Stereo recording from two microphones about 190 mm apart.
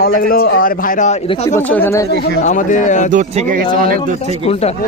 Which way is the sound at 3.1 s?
40° right (ahead or behind).